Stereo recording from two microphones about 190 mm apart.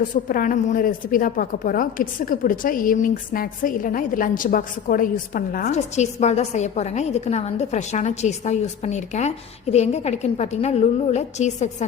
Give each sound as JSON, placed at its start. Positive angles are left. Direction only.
{"t": 0.3, "sound": "a woman's voice", "side_deg": 45}
{"t": 5.7, "sound": "a woman's voice", "side_deg": 35}